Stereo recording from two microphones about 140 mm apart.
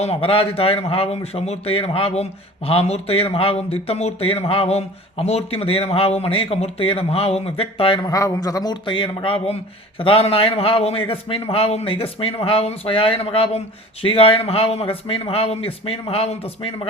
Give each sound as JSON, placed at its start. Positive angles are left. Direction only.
{"t": 0.0, "sound": "speech", "side_deg": 45}
{"t": 8.0, "sound": "a man's voice", "side_deg": 25}